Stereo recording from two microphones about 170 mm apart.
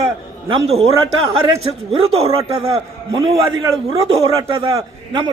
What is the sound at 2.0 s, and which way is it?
Speech, 35° right (ahead or behind).